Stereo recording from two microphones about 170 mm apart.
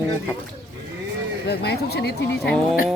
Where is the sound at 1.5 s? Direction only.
70° left (ahead or behind).